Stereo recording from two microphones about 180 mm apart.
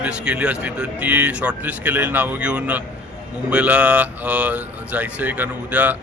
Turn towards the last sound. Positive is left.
turn(degrees=-10)  # may be behind; listen again after turning